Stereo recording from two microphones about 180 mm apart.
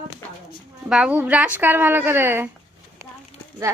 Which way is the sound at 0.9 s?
5° right (ahead or behind).